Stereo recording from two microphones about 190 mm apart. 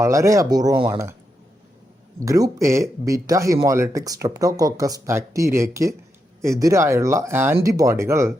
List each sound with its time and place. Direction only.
0.0 s speech: 15° right (ahead or behind)
2.2 s speech: 15° right (ahead or behind)